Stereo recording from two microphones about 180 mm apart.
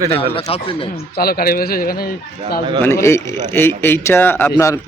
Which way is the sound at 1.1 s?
60° left (ahead or behind).